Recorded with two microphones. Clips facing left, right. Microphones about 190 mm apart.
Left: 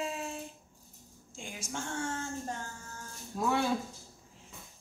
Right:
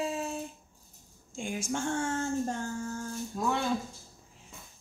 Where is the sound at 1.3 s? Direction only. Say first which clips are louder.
Right 8 dB; 50° right (ahead or behind).